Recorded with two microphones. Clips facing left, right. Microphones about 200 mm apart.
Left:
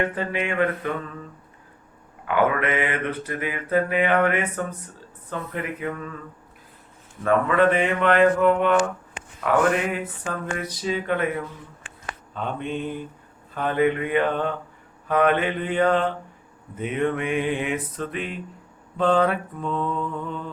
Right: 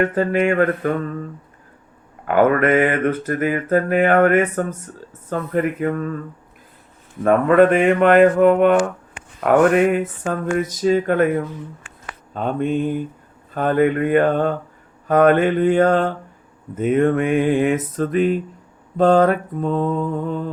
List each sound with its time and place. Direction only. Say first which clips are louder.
0.0 s mantra: right 8 dB; 45° right (ahead or behind)
7.2 s mantra: right 7 dB; 50° right (ahead or behind)